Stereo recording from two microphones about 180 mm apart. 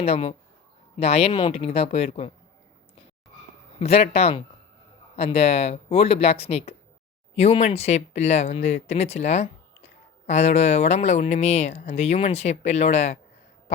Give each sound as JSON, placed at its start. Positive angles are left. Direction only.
{"t": 0.0, "sound": "speech", "side_deg": 35}
{"t": 3.8, "sound": "speech", "side_deg": 35}